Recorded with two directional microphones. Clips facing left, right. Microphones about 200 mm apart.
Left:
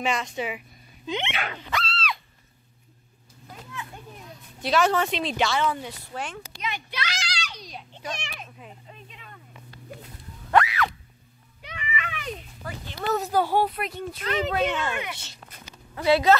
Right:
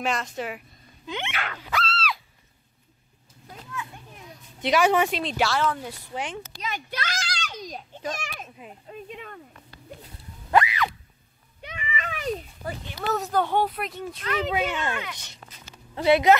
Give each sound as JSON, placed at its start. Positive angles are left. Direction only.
{"t": 0.0, "sound": "speech", "side_deg": 0}
{"t": 1.0, "sound": "sneeze", "side_deg": 20}
{"t": 1.6, "sound": "dog", "side_deg": -5}
{"t": 4.6, "sound": "a woman's voice", "side_deg": -15}
{"t": 5.2, "sound": "speech", "side_deg": 0}
{"t": 6.1, "sound": "a woman's voice", "side_deg": -15}
{"t": 6.5, "sound": "children playing", "side_deg": -40}
{"t": 10.5, "sound": "a sound", "side_deg": 0}
{"t": 11.9, "sound": "children playing", "side_deg": -40}
{"t": 13.0, "sound": "speech", "side_deg": 0}
{"t": 14.5, "sound": "a woman's voice", "side_deg": -10}